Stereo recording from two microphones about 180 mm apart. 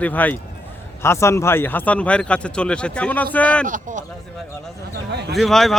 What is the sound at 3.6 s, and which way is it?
Speech, 45° right (ahead or behind).